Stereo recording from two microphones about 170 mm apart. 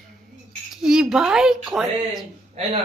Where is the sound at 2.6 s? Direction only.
40° right (ahead or behind).